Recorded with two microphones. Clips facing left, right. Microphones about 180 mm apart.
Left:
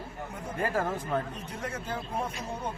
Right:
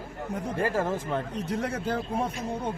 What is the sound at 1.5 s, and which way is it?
Speech, 70° right (ahead or behind).